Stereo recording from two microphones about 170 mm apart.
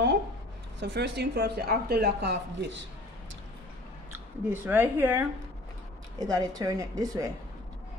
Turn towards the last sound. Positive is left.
turn(degrees=-20)  # may be behind; listen again after turning